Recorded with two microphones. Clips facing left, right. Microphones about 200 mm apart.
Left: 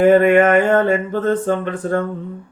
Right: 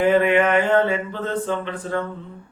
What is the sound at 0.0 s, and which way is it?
Mantra, 50° left (ahead or behind).